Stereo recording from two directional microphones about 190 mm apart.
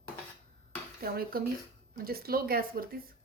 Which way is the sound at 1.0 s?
50° right (ahead or behind).